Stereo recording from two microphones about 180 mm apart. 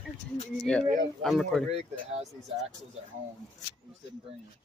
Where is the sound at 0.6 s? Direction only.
5° left (ahead or behind).